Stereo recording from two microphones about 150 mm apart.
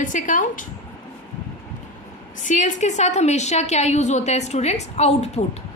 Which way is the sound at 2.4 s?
55° left (ahead or behind).